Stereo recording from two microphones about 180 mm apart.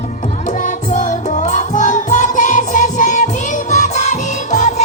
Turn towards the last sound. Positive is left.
turn(degrees=40)  # may be behind; listen again after turning